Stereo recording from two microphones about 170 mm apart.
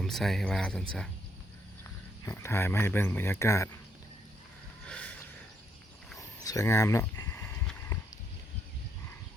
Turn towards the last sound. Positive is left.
turn(degrees=20)  # may be behind; listen again after turning